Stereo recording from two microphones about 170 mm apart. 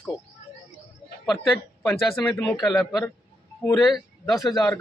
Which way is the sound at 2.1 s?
10° left (ahead or behind).